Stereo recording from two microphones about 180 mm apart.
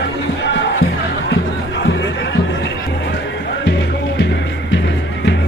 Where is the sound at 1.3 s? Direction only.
75° left (ahead or behind).